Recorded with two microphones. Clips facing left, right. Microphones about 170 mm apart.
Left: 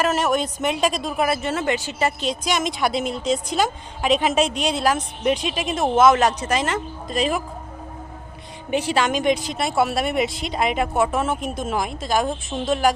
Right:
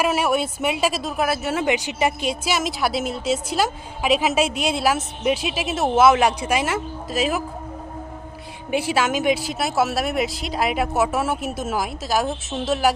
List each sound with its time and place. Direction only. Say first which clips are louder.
0.0 s speech: even; 10° right (ahead or behind)
8.7 s speech: even; 10° right (ahead or behind)